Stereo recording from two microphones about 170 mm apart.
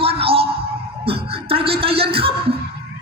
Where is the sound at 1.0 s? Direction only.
35° right (ahead or behind).